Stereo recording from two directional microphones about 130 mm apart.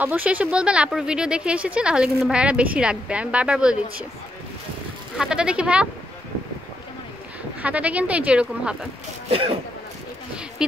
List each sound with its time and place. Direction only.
0.0 s speech: 15° right (ahead or behind)
5.1 s speech: 5° right (ahead or behind)
7.6 s speech: 10° right (ahead or behind)
9.3 s speech: 45° right (ahead or behind)